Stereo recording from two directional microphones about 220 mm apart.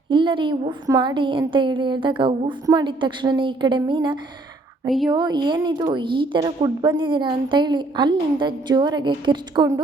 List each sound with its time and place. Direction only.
0.1 s a woman's voice: 20° right (ahead or behind)
4.9 s speech: centre (ahead or behind)
5.1 s a woman's voice: 20° right (ahead or behind)